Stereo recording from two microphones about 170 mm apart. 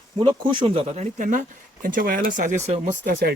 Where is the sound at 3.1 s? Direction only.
60° right (ahead or behind).